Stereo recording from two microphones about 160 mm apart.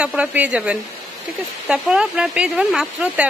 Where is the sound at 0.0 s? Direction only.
5° right (ahead or behind).